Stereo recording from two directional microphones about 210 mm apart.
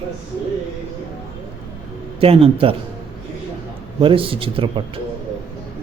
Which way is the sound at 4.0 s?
25° right (ahead or behind).